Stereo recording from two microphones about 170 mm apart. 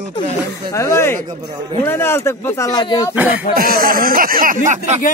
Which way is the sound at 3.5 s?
60° right (ahead or behind).